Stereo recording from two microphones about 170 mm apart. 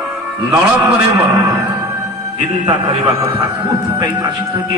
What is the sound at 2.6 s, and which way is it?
A man's voice, 35° right (ahead or behind).